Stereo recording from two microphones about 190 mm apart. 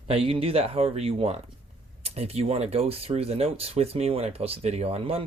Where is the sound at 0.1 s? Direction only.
30° right (ahead or behind).